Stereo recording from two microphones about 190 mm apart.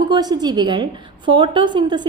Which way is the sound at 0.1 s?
20° right (ahead or behind).